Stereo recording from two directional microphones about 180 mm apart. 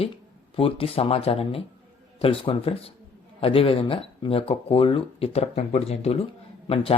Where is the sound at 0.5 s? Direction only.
30° left (ahead or behind).